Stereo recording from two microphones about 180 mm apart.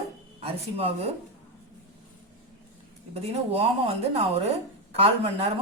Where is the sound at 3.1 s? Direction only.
35° right (ahead or behind).